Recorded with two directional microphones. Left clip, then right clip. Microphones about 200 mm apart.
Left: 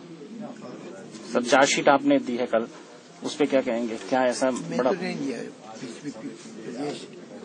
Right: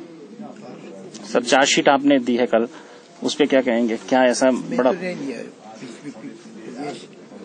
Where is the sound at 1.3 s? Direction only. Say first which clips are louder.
Right 4 dB; 55° right (ahead or behind).